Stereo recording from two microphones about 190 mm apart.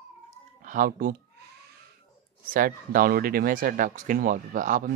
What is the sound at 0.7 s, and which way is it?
Speech, 45° right (ahead or behind).